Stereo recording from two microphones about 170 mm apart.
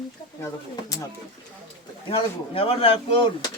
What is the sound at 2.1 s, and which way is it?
Speech, 35° left (ahead or behind).